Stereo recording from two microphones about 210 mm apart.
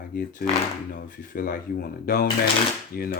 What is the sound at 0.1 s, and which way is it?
Speech, 45° left (ahead or behind).